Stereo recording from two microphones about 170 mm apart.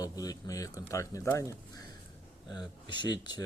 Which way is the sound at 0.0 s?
20° left (ahead or behind).